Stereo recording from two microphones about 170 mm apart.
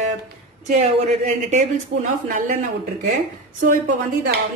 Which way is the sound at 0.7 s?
45° right (ahead or behind).